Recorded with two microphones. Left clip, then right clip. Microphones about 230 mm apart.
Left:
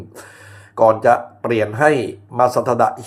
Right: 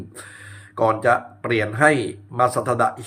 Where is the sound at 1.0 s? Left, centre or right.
Centre.